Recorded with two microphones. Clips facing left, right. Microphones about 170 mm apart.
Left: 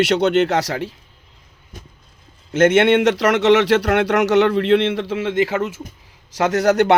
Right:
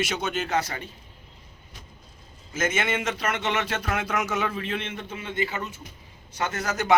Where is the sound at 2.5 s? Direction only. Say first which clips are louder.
Left 14 dB; 70° left (ahead or behind).